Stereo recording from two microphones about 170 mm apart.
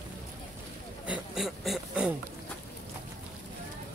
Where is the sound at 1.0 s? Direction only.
5° right (ahead or behind).